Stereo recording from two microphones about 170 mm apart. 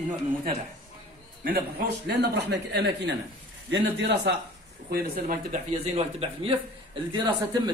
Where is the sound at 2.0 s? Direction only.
75° right (ahead or behind).